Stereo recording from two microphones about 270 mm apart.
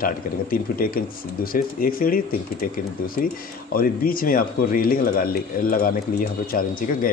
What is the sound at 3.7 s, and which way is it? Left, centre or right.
Speech, left.